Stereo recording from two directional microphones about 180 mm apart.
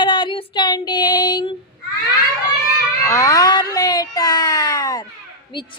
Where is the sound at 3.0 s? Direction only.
15° left (ahead or behind).